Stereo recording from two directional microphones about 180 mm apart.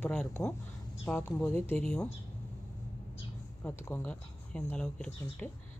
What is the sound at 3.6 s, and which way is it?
A woman's voice, 10° left (ahead or behind).